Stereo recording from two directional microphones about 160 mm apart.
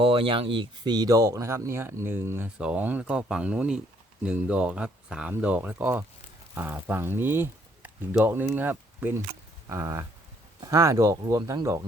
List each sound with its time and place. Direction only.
0.0 s speech: 35° right (ahead or behind)